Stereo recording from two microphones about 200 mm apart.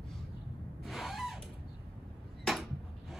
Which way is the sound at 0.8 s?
Centre (ahead or behind).